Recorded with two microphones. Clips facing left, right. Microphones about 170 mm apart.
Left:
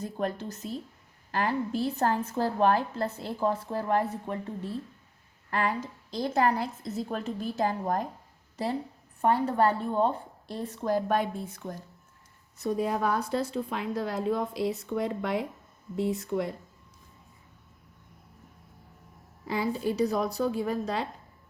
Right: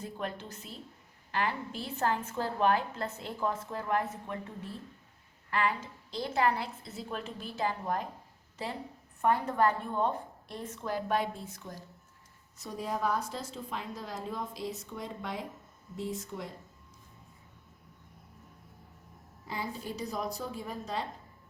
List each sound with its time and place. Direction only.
0.0 s a woman's voice: 40° left (ahead or behind)
9.2 s a woman's voice: 30° left (ahead or behind); by 16.5 s 65° left (ahead or behind)
19.5 s a woman's voice: 75° left (ahead or behind)